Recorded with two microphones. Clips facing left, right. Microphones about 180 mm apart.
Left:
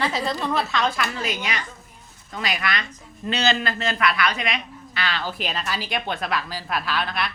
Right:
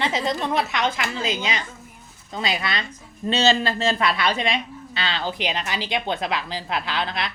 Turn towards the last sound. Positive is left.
turn(degrees=-20)  # may be behind; listen again after turning